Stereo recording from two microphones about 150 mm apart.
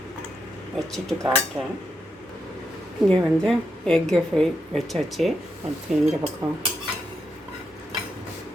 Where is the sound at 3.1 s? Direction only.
5° left (ahead or behind).